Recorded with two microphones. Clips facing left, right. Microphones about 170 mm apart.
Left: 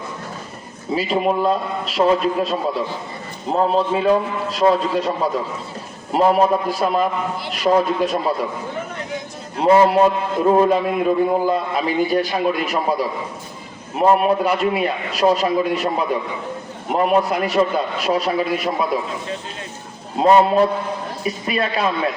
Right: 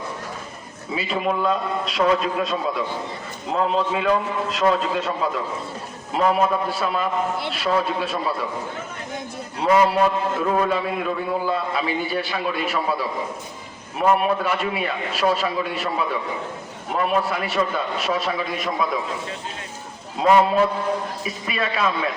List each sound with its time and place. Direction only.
0.9 s a man's voice: 35° left (ahead or behind)
9.6 s a man's voice: 30° left (ahead or behind)
20.1 s a man's voice: 35° left (ahead or behind)